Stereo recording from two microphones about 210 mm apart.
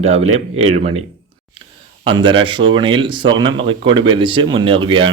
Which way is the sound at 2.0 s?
25° right (ahead or behind).